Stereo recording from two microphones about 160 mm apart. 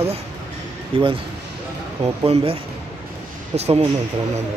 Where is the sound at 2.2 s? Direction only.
35° right (ahead or behind).